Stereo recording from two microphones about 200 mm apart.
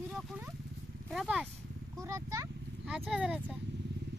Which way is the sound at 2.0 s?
15° right (ahead or behind).